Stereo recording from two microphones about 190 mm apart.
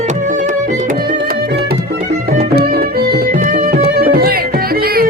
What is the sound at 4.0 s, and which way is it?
Music, 55° right (ahead or behind).